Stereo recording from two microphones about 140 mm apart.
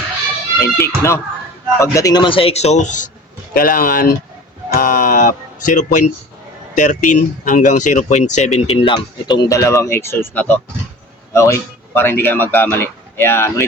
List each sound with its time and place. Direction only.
0.6 s speech: 20° left (ahead or behind); by 3.1 s 60° left (ahead or behind)
3.5 s speech: 90° left; by 8.4 s 55° left (ahead or behind)
8.5 s a man's voice: 45° left (ahead or behind); by 13.7 s 15° left (ahead or behind)